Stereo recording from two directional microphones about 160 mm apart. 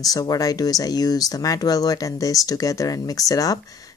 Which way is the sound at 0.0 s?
20° left (ahead or behind).